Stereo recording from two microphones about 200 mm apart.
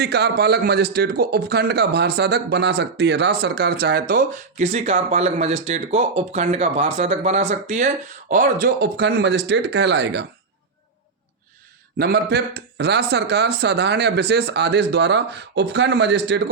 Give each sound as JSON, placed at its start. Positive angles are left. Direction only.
{"t": 0.0, "sound": "a man's voice", "side_deg": -55}
{"t": 11.9, "sound": "speech", "side_deg": -55}